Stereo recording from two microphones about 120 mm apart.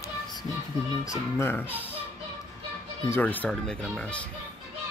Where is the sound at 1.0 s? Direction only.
25° left (ahead or behind).